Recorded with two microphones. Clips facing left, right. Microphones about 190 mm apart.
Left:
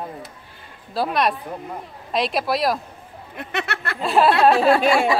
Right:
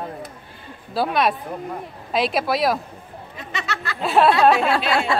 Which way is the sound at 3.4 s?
55° left (ahead or behind).